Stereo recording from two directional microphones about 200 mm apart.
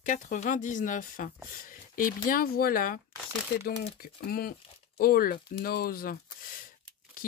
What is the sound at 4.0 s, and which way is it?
Speech, 45° left (ahead or behind).